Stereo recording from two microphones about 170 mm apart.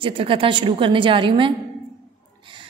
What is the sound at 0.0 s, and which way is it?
A woman's voice, 30° right (ahead or behind).